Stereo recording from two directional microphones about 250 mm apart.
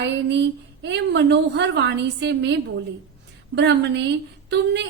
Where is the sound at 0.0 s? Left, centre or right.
Right.